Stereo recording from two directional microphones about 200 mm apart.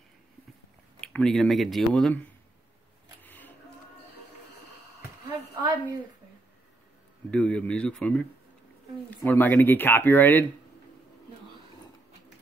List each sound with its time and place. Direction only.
1.0 s speech: 5° left (ahead or behind)
3.2 s a sound: 10° left (ahead or behind)
5.6 s a woman's voice: 20° right (ahead or behind)
7.2 s speech: 5° left (ahead or behind)